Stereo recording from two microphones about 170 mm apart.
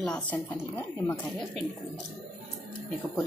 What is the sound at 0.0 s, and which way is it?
Speech, 5° left (ahead or behind).